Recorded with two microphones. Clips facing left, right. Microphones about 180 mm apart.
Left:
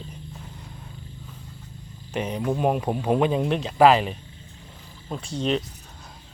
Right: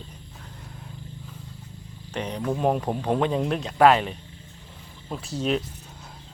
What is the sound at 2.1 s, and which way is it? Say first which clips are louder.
Speech: left 2 dB; 10° left (ahead or behind).